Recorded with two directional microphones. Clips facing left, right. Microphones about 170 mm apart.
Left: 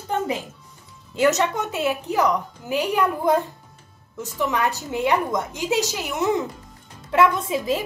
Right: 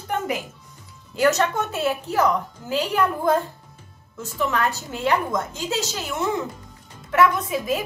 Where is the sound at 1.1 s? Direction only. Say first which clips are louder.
Even; 20° left (ahead or behind).